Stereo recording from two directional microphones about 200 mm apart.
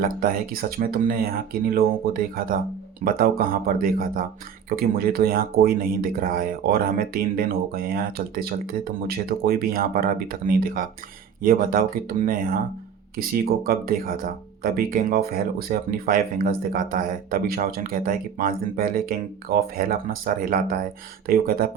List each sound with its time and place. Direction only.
0.0 s speech: 45° right (ahead or behind)